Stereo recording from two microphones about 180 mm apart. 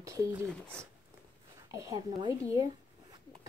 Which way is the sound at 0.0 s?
15° right (ahead or behind).